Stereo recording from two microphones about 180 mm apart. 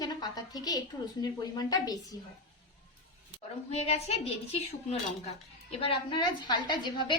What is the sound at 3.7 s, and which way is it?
A woman's voice, 35° left (ahead or behind).